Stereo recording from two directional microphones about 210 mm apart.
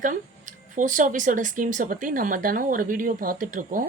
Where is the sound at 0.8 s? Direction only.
40° right (ahead or behind).